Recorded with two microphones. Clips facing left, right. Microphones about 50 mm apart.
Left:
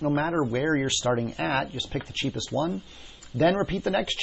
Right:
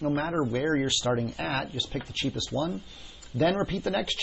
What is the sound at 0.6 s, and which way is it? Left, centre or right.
Speech, left.